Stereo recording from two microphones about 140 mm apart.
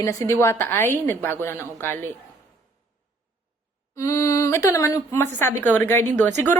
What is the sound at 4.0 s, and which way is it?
A woman's voice, 20° left (ahead or behind).